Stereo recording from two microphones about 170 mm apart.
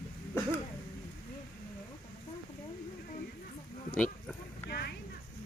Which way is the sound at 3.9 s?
5° left (ahead or behind).